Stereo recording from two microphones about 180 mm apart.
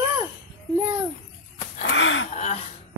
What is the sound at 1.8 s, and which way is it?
Gasp, 90° left.